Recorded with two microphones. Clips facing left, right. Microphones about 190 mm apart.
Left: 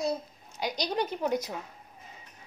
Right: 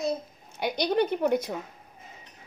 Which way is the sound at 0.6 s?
60° right (ahead or behind).